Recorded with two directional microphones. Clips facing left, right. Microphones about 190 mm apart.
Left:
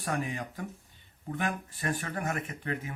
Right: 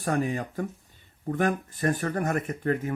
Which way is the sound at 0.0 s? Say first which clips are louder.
Right 6 dB; 40° right (ahead or behind).